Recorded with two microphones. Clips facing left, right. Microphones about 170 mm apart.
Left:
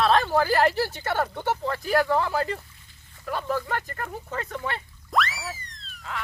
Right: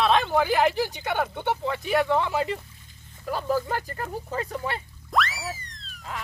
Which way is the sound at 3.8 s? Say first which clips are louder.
Right 1 dB; 30° right (ahead or behind).